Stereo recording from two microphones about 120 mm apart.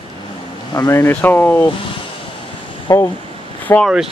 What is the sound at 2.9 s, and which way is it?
Speech, 25° left (ahead or behind).